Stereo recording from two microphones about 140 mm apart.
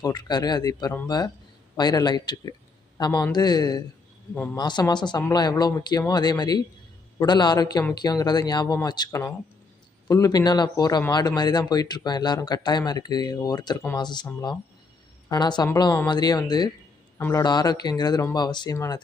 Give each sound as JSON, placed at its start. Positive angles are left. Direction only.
{"t": 0.0, "sound": "speech", "side_deg": 30}
{"t": 15.3, "sound": "speech", "side_deg": 30}
{"t": 17.2, "sound": "a man's voice", "side_deg": 15}
{"t": 17.4, "sound": "speech", "side_deg": 30}